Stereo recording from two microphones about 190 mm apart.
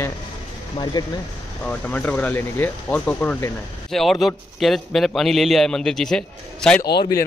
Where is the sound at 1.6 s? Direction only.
5° left (ahead or behind).